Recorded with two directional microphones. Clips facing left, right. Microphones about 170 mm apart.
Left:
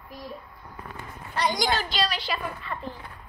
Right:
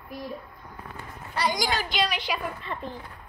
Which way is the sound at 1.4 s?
5° right (ahead or behind).